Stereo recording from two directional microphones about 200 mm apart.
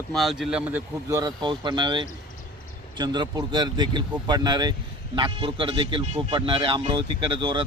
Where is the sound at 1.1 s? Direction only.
20° right (ahead or behind).